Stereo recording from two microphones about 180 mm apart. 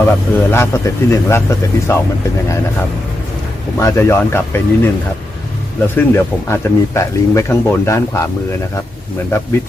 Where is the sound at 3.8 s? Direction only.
15° left (ahead or behind).